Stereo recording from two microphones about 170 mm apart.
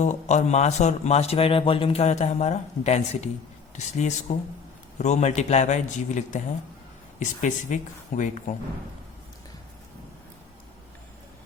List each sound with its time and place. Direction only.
0.0 s a man's voice: 45° left (ahead or behind)